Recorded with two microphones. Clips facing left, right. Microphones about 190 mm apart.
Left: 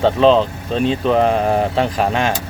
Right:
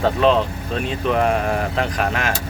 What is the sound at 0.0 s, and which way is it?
Speech, 30° left (ahead or behind).